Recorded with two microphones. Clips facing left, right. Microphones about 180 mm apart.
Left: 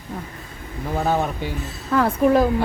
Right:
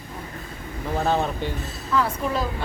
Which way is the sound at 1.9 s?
55° left (ahead or behind).